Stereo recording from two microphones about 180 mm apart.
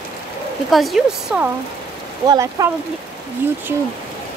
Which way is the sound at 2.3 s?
20° right (ahead or behind).